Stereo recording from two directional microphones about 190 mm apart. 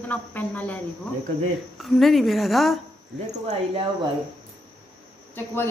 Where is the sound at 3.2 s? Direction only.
35° right (ahead or behind).